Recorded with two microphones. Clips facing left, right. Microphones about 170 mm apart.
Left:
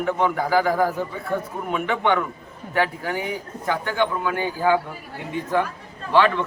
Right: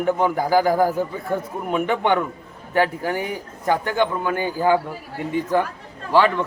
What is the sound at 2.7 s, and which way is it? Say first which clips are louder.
A man's voice: right 3 dB; 40° right (ahead or behind).